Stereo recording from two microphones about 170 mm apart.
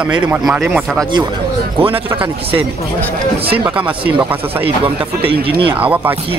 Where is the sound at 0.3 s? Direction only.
5° right (ahead or behind).